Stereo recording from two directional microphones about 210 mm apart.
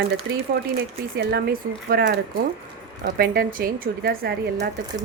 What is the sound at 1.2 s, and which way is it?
A woman's voice, 50° right (ahead or behind).